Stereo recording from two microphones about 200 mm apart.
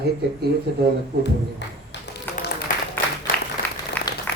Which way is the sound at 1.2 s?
60° left (ahead or behind).